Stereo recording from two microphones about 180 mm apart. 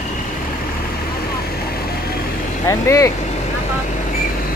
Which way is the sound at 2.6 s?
15° left (ahead or behind).